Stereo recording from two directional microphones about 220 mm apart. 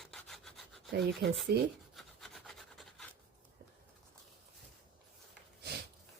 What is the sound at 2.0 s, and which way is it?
Rub, centre (ahead or behind).